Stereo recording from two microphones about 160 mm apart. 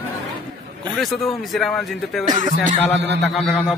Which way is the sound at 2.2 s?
25° right (ahead or behind).